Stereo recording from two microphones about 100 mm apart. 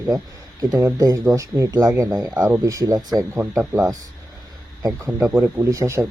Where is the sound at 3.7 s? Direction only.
30° right (ahead or behind).